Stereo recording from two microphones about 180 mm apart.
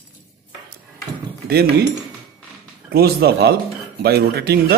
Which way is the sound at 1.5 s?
65° right (ahead or behind).